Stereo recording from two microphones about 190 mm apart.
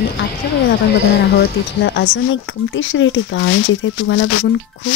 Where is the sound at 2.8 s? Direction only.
85° left.